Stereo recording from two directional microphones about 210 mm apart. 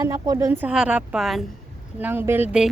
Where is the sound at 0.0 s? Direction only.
15° right (ahead or behind).